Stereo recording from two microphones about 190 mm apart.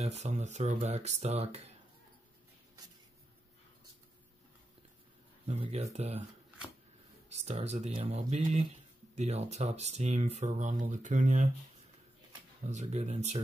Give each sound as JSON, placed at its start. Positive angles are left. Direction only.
{"t": 0.0, "sound": "speech", "side_deg": -35}
{"t": 5.5, "sound": "speech", "side_deg": -35}
{"t": 7.2, "sound": "speech", "side_deg": -35}
{"t": 12.6, "sound": "speech", "side_deg": -35}